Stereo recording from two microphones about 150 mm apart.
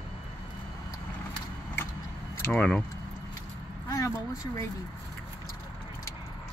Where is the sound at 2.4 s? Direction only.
10° left (ahead or behind).